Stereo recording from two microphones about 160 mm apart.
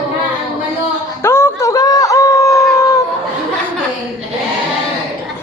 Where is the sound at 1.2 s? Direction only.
15° left (ahead or behind).